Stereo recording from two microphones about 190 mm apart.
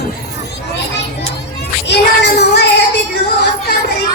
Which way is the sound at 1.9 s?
60° left (ahead or behind).